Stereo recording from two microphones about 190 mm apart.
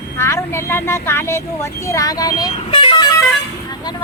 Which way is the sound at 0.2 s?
15° left (ahead or behind).